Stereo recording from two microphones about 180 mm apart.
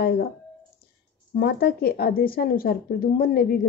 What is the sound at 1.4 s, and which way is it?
Speech, 60° left (ahead or behind).